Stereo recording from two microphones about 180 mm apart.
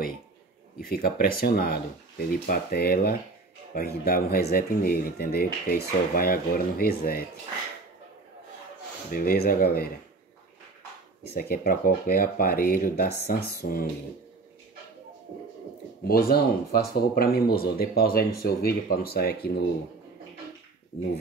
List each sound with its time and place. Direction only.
0.7 s speech: 60° left (ahead or behind)
9.1 s speech: 55° left (ahead or behind)
11.3 s speech: 55° left (ahead or behind)
16.0 s speech: 60° left (ahead or behind)